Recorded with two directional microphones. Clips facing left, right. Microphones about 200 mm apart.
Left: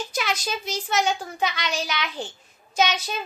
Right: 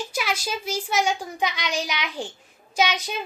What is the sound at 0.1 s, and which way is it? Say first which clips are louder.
A child's voice: even; 10° right (ahead or behind).